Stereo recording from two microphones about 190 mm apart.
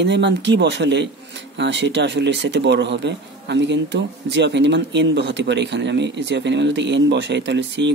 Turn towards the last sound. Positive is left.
turn(degrees=-70)  # may be behind; listen again after turning